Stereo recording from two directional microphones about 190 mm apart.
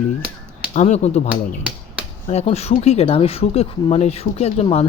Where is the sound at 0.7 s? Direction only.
35° left (ahead or behind).